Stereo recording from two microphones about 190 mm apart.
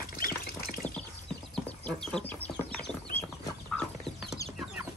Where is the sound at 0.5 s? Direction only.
50° left (ahead or behind).